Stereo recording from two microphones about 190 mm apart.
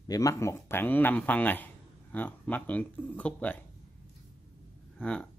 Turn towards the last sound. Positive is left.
turn(degrees=5)  # may be behind; listen again after turning